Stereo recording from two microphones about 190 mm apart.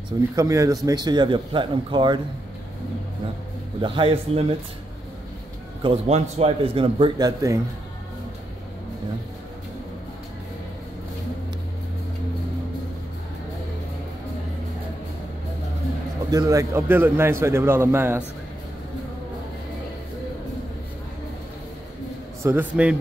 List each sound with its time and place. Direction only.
0.4 s a man's voice: 15° right (ahead or behind)
3.8 s a man's voice: 25° right (ahead or behind)
5.8 s a man's voice: 30° right (ahead or behind)
16.3 s a man's voice: 15° right (ahead or behind)
22.4 s a man's voice: 10° right (ahead or behind)